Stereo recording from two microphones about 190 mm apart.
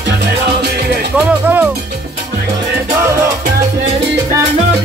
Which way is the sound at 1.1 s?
10° right (ahead or behind).